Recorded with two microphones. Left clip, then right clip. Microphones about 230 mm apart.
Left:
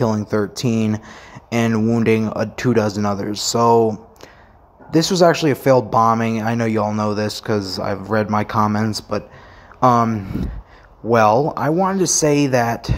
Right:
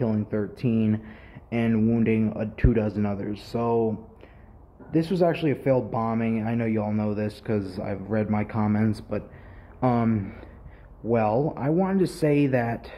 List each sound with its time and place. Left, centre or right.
0.0 s speech: centre
4.9 s speech: centre
11.1 s speech: centre